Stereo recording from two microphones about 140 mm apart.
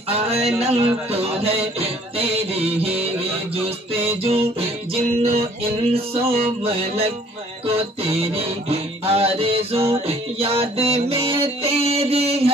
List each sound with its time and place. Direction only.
0.1 s music: 45° right (ahead or behind)